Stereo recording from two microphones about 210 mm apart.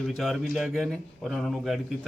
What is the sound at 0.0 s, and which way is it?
A man's voice, centre (ahead or behind).